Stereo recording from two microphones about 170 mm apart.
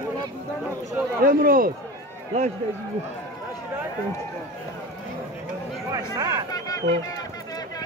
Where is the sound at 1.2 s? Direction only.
60° right (ahead or behind).